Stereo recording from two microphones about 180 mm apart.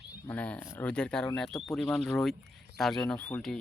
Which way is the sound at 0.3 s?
10° left (ahead or behind).